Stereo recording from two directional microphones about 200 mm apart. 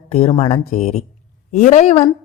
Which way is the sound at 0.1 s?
30° left (ahead or behind).